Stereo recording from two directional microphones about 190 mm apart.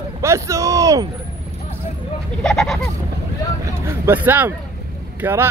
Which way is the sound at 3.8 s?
10° right (ahead or behind).